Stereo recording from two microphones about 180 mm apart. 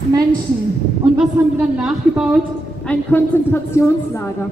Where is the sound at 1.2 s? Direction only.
5° right (ahead or behind).